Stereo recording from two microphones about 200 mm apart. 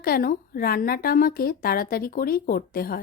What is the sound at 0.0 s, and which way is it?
A woman's voice, 45° left (ahead or behind).